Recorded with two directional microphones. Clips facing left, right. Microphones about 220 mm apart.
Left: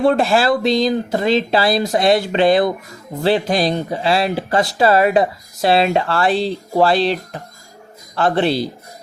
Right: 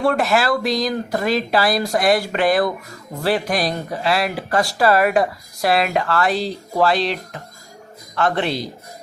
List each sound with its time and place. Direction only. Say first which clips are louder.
0.0 s speech: left 3 dB; 25° left (ahead or behind)